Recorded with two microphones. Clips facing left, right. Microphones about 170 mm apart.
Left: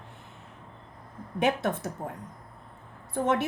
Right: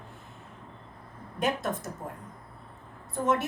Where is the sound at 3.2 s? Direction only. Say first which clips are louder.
Left 1 dB; 65° left (ahead or behind).